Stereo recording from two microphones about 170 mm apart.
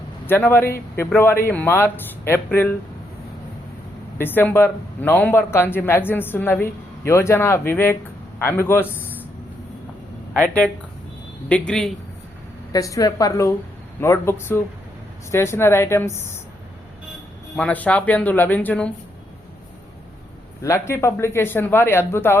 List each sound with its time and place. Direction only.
0.3 s speech: 15° left (ahead or behind)
4.2 s a man's voice: 10° left (ahead or behind)
10.3 s speech: 10° left (ahead or behind)
12.7 s a woman's voice: 20° left (ahead or behind)
17.6 s speech: 10° left (ahead or behind)
20.6 s speech: 15° left (ahead or behind)